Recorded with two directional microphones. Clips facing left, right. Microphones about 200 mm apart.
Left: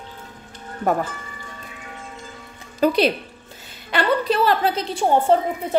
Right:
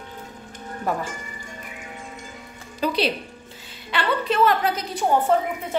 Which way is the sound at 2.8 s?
50° left (ahead or behind).